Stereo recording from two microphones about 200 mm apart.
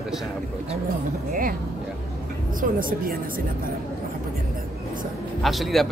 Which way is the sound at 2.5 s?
45° right (ahead or behind).